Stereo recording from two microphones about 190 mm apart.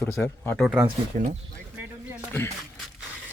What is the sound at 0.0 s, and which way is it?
Speech, 10° left (ahead or behind).